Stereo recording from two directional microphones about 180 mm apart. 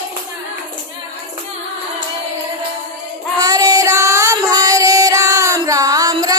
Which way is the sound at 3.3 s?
20° right (ahead or behind).